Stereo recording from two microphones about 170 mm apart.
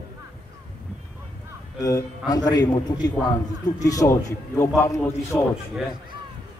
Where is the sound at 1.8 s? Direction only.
20° left (ahead or behind).